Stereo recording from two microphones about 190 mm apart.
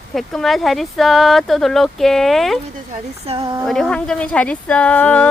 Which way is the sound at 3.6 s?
Centre (ahead or behind).